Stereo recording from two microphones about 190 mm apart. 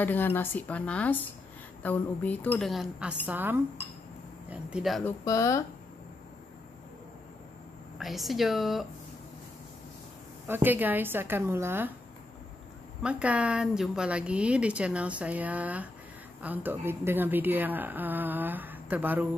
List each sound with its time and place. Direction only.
0.0 s a woman's voice: 10° left (ahead or behind)
5.0 s speech: 15° left (ahead or behind)
8.0 s a woman's voice: centre (ahead or behind)
10.4 s a woman's voice: 10° right (ahead or behind)
13.0 s a woman's voice: 5° right (ahead or behind)